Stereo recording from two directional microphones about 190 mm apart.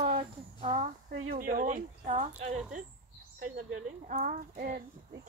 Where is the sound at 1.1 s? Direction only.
50° right (ahead or behind).